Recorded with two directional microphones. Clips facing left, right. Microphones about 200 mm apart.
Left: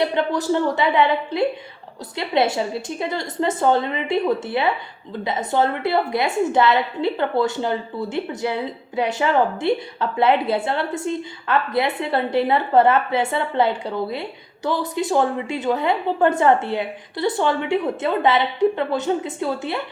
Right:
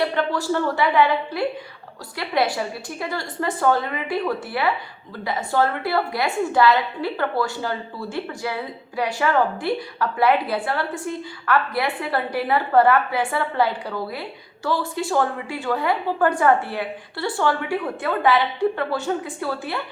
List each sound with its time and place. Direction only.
0.0 s a woman's voice: 20° left (ahead or behind)